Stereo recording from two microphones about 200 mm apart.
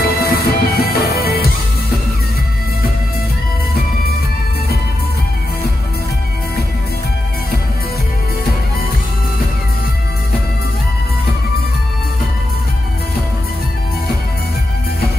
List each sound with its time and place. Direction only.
0.0 s music: 50° left (ahead or behind)